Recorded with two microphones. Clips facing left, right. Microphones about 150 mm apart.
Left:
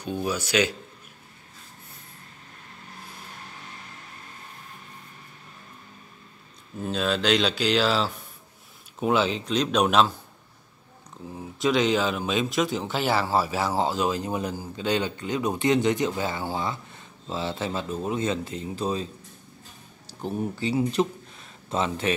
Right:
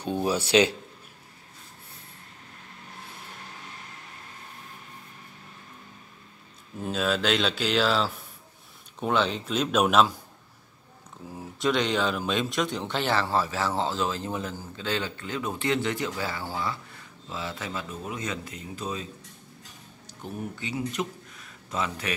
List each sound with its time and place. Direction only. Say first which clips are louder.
0.0 s speech: right 2 dB; 30° right (ahead or behind)
6.8 s speech: left 1 dB; 5° right (ahead or behind)
11.6 s a man's voice: left 3 dB; centre (ahead or behind); by 19.0 s 30° left (ahead or behind)
20.1 s speech: left 6 dB; 35° left (ahead or behind)